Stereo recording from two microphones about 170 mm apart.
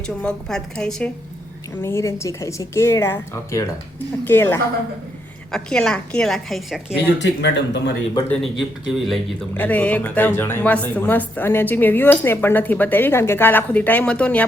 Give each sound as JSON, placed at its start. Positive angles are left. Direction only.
{"t": 0.2, "sound": "a woman's voice", "side_deg": 5}
{"t": 1.8, "sound": "a woman's voice", "side_deg": 15}
{"t": 7.1, "sound": "speech", "side_deg": 90}
{"t": 8.5, "sound": "a woman's voice", "side_deg": 0}
{"t": 9.6, "sound": "speech", "side_deg": 10}